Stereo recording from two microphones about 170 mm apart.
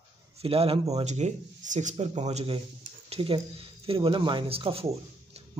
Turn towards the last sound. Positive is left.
turn(degrees=-35)  # may be behind; listen again after turning